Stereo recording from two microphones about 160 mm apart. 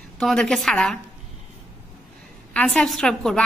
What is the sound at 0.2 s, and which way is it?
Speech, 5° left (ahead or behind).